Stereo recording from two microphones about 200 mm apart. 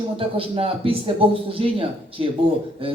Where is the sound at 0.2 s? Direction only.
30° right (ahead or behind).